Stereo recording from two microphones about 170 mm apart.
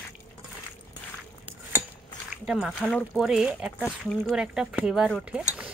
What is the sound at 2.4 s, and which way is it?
Speech, centre (ahead or behind).